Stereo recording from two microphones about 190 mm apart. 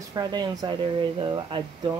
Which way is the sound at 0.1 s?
20° right (ahead or behind).